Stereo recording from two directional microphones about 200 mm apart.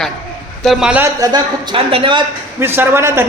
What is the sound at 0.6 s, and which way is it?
A man's voice, centre (ahead or behind).